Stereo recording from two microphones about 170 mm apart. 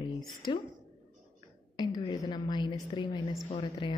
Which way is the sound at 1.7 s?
25° left (ahead or behind).